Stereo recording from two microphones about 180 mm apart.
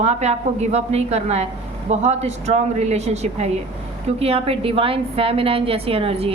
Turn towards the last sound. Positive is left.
turn(degrees=-30)  # may be behind; listen again after turning